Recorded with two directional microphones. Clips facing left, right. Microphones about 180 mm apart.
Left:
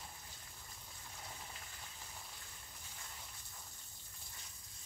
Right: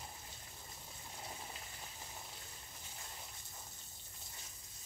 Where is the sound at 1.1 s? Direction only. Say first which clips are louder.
Right 3 dB; 25° right (ahead or behind).